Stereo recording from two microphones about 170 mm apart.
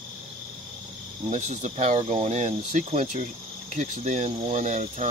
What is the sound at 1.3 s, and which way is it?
Speech, 45° right (ahead or behind).